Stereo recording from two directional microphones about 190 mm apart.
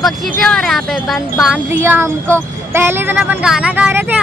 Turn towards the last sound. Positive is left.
turn(degrees=-10)  # may be behind; listen again after turning